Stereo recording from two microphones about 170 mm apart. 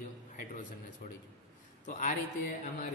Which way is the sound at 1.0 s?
65° left (ahead or behind).